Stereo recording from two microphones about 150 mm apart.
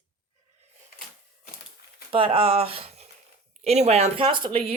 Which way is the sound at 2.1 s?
35° right (ahead or behind).